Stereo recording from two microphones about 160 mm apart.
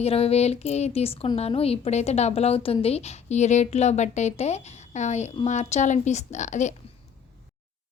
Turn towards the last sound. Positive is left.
turn(degrees=50)  # may be behind; listen again after turning